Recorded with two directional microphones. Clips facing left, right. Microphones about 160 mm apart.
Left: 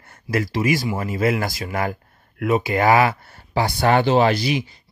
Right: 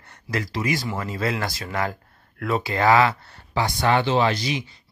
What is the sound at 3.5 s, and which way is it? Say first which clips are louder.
Speech: left 3 dB; 35° left (ahead or behind).